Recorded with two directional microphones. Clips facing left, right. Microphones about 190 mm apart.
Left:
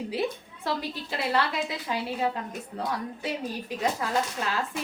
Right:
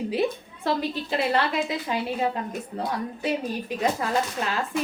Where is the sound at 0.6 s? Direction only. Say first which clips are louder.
Right 5 dB; 25° right (ahead or behind).